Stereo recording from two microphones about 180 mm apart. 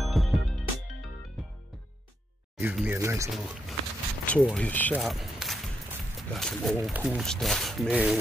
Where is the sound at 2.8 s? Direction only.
15° right (ahead or behind).